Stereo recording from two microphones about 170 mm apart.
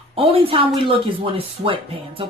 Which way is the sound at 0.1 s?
35° right (ahead or behind).